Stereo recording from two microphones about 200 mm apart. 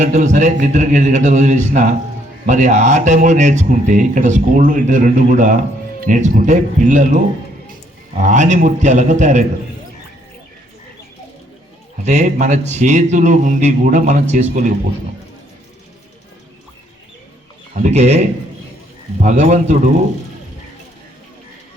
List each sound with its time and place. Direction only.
0.0 s speech: 35° right (ahead or behind)
8.2 s speech: 35° right (ahead or behind)
12.0 s speech: 35° right (ahead or behind)
17.7 s speech: 35° right (ahead or behind)